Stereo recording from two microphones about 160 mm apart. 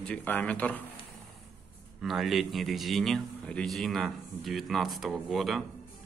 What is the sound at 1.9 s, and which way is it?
A man's voice, centre (ahead or behind).